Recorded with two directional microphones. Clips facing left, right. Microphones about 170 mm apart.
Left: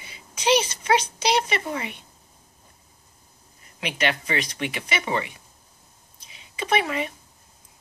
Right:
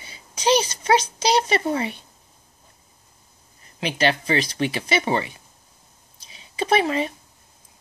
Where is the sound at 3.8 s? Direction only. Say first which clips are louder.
Right 4 dB; 30° right (ahead or behind).